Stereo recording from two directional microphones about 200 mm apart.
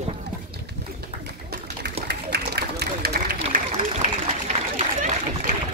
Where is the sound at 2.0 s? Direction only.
55° right (ahead or behind).